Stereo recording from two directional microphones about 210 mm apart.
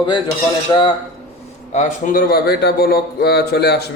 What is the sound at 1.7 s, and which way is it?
A man's voice, 35° left (ahead or behind).